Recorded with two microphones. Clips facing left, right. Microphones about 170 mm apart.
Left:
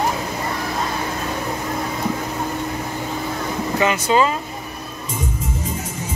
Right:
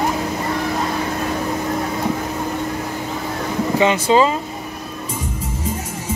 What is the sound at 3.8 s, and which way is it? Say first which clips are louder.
Speech: right 3 dB; 25° right (ahead or behind).